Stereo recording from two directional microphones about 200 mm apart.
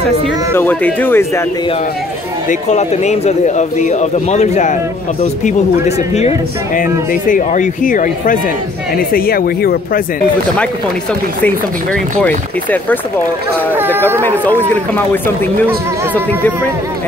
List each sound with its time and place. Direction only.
0.6 s speech: 10° left (ahead or behind)
2.7 s speech: 35° left (ahead or behind)
11.4 s speech: 5° left (ahead or behind)
13.7 s speech: 10° right (ahead or behind)